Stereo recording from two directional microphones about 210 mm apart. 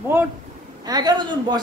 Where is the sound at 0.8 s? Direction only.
20° right (ahead or behind).